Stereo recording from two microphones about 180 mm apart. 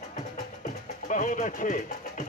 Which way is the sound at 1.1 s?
45° left (ahead or behind).